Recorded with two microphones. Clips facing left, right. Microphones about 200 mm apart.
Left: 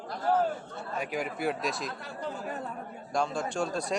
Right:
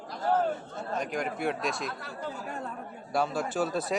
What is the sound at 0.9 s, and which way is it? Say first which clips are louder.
Speech: right 1 dB; 5° left (ahead or behind).